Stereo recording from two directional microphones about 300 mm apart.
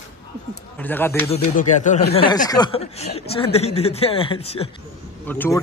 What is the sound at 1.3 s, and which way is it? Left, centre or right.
Speech, left.